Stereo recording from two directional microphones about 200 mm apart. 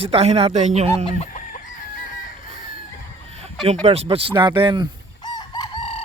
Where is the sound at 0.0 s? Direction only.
30° right (ahead or behind).